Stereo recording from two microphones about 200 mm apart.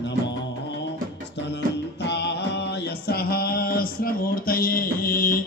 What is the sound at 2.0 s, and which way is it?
Music, 60° left (ahead or behind).